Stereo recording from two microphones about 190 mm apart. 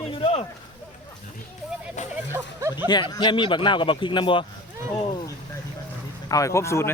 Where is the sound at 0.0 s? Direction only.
30° left (ahead or behind).